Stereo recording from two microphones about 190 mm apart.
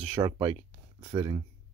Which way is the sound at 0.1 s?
30° right (ahead or behind).